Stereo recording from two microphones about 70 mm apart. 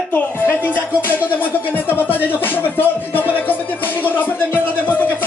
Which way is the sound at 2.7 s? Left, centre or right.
Left.